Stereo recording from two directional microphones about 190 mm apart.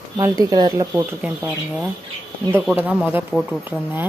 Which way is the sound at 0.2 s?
20° right (ahead or behind).